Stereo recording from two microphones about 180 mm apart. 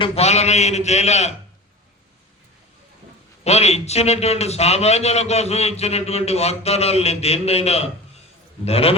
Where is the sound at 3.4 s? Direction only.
35° left (ahead or behind).